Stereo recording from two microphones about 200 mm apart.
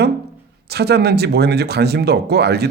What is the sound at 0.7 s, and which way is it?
A man's voice, 55° right (ahead or behind).